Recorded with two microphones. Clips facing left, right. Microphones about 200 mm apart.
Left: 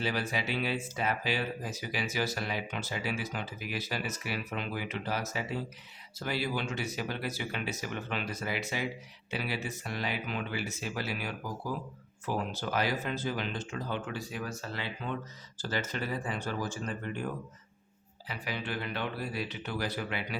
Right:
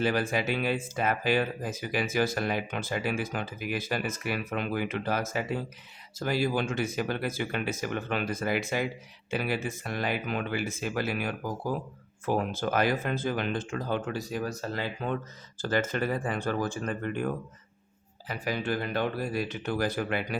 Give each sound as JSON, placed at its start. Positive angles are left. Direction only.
{"t": 0.0, "sound": "speech", "side_deg": -50}
{"t": 18.3, "sound": "speech", "side_deg": -45}